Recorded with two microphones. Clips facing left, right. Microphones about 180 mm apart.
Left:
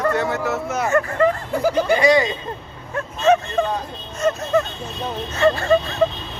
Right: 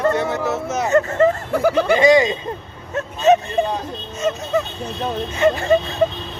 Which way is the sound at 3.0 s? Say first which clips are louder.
Right 2 dB; 20° right (ahead or behind).